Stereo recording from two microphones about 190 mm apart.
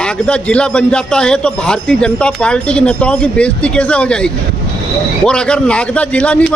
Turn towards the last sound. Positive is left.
turn(degrees=5)  # may be behind; listen again after turning